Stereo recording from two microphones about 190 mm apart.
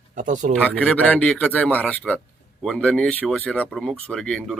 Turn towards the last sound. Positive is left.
turn(degrees=0)  # may be behind; listen again after turning